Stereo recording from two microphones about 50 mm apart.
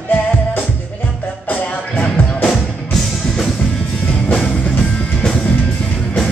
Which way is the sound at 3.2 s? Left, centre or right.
Centre.